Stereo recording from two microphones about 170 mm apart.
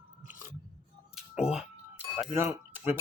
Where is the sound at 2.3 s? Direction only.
15° right (ahead or behind).